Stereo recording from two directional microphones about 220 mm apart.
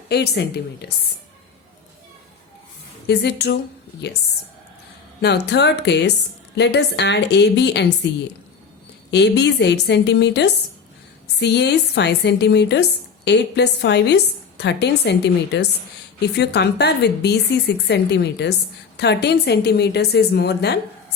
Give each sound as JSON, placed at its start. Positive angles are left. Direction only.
{"t": 0.1, "sound": "a woman's voice", "side_deg": 45}
{"t": 3.1, "sound": "a woman's voice", "side_deg": 50}
{"t": 5.2, "sound": "a woman's voice", "side_deg": 50}
{"t": 9.0, "sound": "a woman's voice", "side_deg": 50}